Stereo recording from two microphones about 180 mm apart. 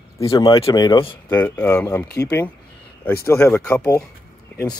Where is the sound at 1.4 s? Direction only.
10° left (ahead or behind).